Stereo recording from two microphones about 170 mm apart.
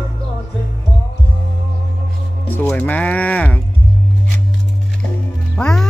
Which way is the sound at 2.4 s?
10° left (ahead or behind).